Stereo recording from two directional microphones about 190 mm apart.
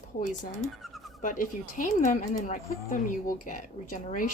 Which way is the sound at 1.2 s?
45° left (ahead or behind).